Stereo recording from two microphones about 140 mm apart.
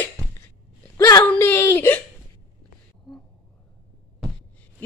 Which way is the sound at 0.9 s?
25° left (ahead or behind).